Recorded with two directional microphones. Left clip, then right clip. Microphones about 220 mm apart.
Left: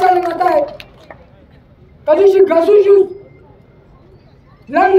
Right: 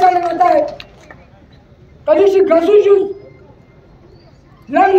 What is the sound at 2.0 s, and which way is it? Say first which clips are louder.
Speech: left 1 dB; 5° left (ahead or behind).